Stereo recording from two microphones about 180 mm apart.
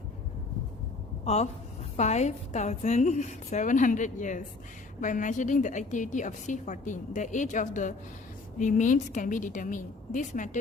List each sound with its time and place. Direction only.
1.2 s a woman's voice: 35° left (ahead or behind)